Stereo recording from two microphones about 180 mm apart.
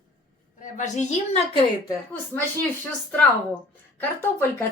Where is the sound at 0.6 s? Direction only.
40° left (ahead or behind).